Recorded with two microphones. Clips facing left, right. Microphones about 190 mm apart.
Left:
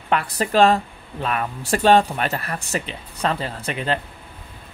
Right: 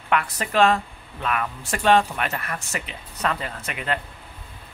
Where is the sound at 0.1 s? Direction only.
35° left (ahead or behind).